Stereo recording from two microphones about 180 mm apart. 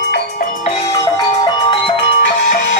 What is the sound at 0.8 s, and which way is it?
Music, 20° left (ahead or behind).